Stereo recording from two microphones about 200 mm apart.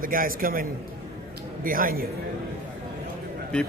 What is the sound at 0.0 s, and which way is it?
A man's voice, 45° right (ahead or behind).